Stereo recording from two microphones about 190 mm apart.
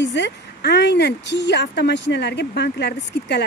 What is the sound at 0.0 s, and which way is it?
Speech, 70° left (ahead or behind).